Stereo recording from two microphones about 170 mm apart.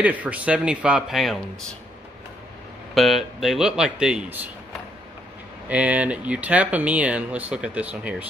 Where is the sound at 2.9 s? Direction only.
Centre (ahead or behind).